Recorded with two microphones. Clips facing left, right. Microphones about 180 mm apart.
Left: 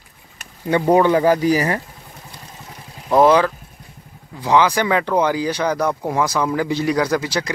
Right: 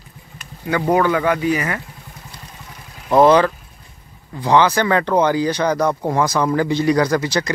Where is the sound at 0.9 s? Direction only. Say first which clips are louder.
Left 3 dB; 30° left (ahead or behind).